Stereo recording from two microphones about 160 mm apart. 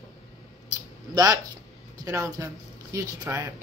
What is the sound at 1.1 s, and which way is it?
Speech, 25° right (ahead or behind).